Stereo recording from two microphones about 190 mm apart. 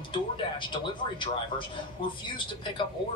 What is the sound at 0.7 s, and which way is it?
Speech, 25° left (ahead or behind).